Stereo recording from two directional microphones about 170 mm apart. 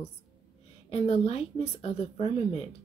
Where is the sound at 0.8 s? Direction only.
35° left (ahead or behind).